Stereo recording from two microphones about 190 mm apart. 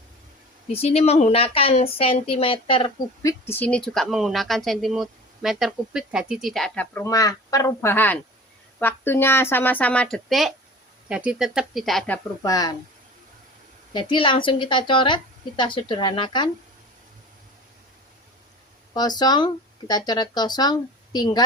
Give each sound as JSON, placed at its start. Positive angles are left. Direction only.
{"t": 0.7, "sound": "a woman's voice", "side_deg": 30}
{"t": 3.4, "sound": "a woman's voice", "side_deg": 10}
{"t": 12.4, "sound": "a woman's voice", "side_deg": 20}
{"t": 13.9, "sound": "a woman's voice", "side_deg": 25}
{"t": 18.9, "sound": "a woman's voice", "side_deg": 20}